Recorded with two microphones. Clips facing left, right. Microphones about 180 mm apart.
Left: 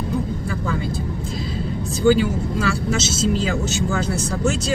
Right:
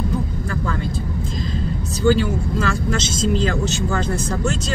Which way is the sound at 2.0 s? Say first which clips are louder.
Left 1 dB; 10° left (ahead or behind).